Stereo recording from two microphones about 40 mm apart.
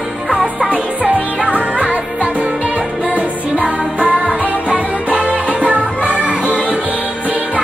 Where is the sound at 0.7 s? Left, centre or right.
Right.